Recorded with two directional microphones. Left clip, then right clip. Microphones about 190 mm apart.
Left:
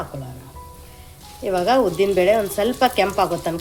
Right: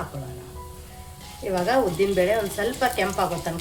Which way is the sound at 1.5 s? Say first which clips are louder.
Left 4 dB; 40° left (ahead or behind).